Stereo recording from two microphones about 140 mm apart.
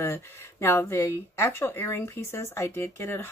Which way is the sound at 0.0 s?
20° left (ahead or behind).